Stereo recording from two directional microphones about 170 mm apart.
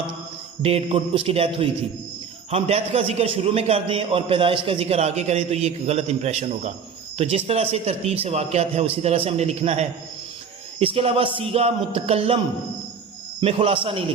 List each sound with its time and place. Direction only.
0.6 s a man's voice: 35° right (ahead or behind)
13.4 s a man's voice: 35° right (ahead or behind)